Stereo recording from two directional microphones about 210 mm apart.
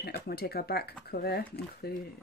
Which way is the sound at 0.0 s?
50° left (ahead or behind).